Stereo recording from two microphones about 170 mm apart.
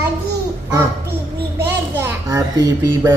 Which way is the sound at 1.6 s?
10° right (ahead or behind).